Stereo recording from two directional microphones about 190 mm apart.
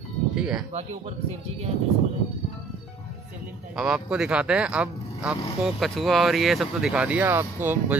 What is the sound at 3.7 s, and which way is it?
Speech, 5° right (ahead or behind).